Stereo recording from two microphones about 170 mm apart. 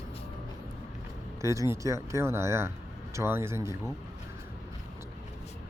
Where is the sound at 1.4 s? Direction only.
15° right (ahead or behind).